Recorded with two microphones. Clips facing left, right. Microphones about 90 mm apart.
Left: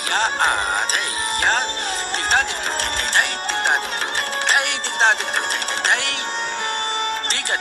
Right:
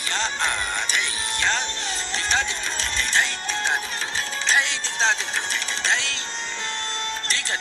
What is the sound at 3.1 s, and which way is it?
Music, 60° left (ahead or behind).